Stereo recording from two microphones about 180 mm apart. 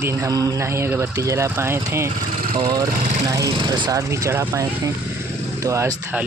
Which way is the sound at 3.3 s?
20° right (ahead or behind).